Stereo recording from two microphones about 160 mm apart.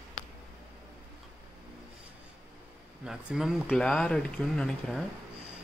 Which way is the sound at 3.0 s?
5° right (ahead or behind).